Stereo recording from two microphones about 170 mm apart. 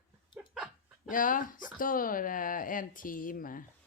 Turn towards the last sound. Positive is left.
turn(degrees=55)  # may be behind; listen again after turning